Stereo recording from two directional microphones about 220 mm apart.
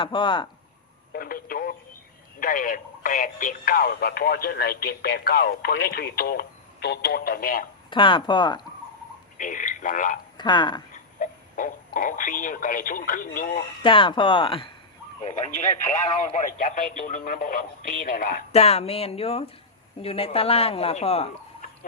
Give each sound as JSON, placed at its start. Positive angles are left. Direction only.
{"t": 0.0, "sound": "speech", "side_deg": 20}
{"t": 1.1, "sound": "telephone", "side_deg": 40}
{"t": 2.4, "sound": "speech", "side_deg": 40}
{"t": 7.9, "sound": "speech", "side_deg": 20}
{"t": 9.4, "sound": "speech", "side_deg": 35}
{"t": 10.3, "sound": "speech", "side_deg": 20}
{"t": 10.9, "sound": "speech", "side_deg": 35}
{"t": 13.8, "sound": "speech", "side_deg": 20}
{"t": 18.5, "sound": "speech", "side_deg": 30}